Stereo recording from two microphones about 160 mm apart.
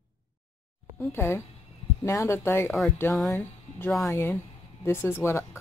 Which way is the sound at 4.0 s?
15° left (ahead or behind).